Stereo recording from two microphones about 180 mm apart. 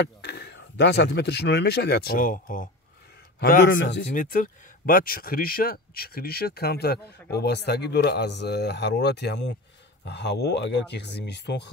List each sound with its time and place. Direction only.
0.0 s speech: 65° left (ahead or behind)
4.1 s speech: 50° left (ahead or behind); by 11.7 s 70° left (ahead or behind)